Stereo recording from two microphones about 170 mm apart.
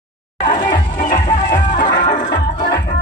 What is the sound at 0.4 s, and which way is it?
Music, 25° left (ahead or behind).